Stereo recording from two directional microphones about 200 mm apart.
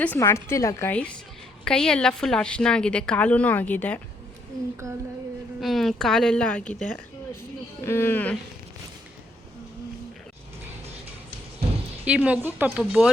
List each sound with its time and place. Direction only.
0.0 s a woman's voice: 10° left (ahead or behind)
4.8 s speech: 15° right (ahead or behind)
5.5 s a woman's voice: centre (ahead or behind)
12.0 s speech: 5° right (ahead or behind)